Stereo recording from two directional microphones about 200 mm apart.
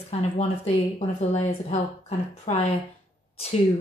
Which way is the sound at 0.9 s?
35° left (ahead or behind).